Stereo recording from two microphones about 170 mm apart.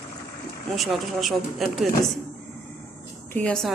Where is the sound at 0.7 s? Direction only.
Centre (ahead or behind).